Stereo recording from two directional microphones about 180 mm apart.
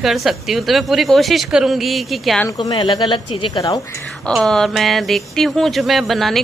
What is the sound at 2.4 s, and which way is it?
Speech, 20° left (ahead or behind).